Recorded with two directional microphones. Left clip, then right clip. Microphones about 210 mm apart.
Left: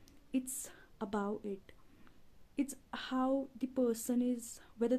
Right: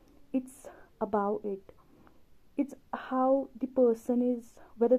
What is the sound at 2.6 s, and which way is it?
Speech, 20° left (ahead or behind).